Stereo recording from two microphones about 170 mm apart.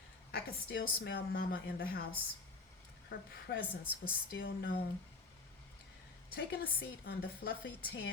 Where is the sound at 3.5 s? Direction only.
65° left (ahead or behind).